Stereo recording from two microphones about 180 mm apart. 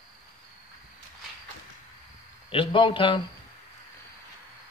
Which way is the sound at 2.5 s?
30° left (ahead or behind).